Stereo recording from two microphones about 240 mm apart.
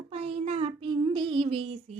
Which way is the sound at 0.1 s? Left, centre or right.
Right.